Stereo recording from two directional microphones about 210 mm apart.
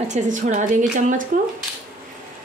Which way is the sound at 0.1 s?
35° right (ahead or behind).